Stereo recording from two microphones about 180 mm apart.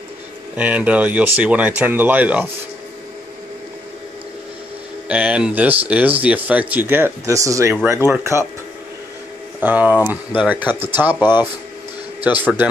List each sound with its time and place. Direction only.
0.6 s speech: 10° right (ahead or behind)
5.0 s speech: 5° right (ahead or behind)
9.6 s speech: 10° right (ahead or behind)
11.1 s speech: 25° left (ahead or behind)
12.2 s speech: 10° right (ahead or behind)